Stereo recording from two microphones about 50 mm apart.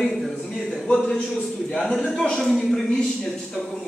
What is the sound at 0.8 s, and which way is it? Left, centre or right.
A man's voice, centre.